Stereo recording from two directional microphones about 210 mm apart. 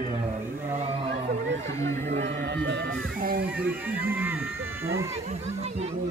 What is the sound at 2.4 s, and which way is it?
Speech, 55° right (ahead or behind).